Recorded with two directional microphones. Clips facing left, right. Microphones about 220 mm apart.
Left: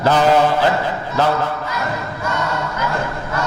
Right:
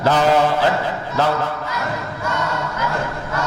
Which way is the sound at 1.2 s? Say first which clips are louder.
Left 2 dB; 25° left (ahead or behind).